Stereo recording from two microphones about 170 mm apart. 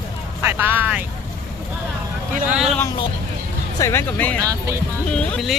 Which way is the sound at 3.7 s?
15° left (ahead or behind).